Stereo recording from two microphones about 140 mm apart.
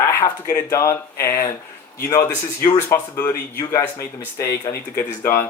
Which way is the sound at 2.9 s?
15° left (ahead or behind).